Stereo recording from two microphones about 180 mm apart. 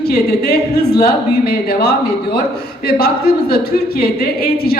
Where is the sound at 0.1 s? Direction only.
60° left (ahead or behind).